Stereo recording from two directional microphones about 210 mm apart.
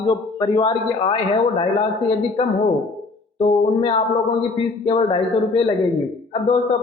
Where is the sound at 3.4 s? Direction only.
30° left (ahead or behind).